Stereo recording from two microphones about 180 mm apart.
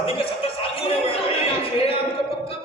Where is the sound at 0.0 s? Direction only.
30° left (ahead or behind).